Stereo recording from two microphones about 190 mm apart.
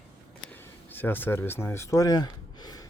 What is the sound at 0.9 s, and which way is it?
Speech, 10° left (ahead or behind).